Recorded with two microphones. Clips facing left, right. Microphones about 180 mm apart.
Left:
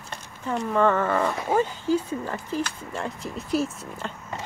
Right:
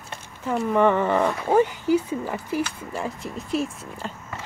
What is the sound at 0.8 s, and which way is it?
Speech, 15° right (ahead or behind).